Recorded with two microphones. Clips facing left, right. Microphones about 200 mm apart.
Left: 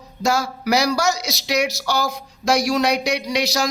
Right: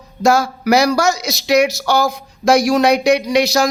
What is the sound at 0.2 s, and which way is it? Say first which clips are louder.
Speech: right 7 dB; 55° right (ahead or behind).